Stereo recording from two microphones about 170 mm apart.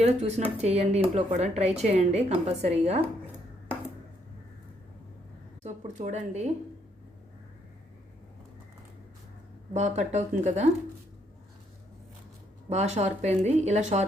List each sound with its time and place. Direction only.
0.0 s speech: 40° right (ahead or behind)
5.6 s speech: 40° right (ahead or behind)
9.7 s speech: 40° right (ahead or behind)
12.6 s speech: 40° right (ahead or behind)